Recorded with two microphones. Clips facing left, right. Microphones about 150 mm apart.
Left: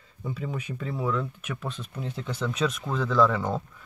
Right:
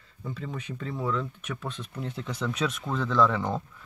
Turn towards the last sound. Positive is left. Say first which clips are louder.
# left 1 dB
turn(degrees=5)  # may be behind; listen again after turning